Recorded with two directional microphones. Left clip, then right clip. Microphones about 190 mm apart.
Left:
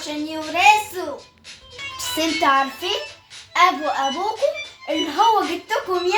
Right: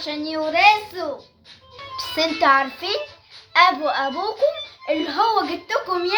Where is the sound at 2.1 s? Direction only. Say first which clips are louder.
Right 1 dB; 20° right (ahead or behind).